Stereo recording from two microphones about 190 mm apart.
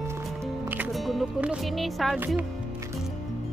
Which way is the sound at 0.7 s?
10° right (ahead or behind).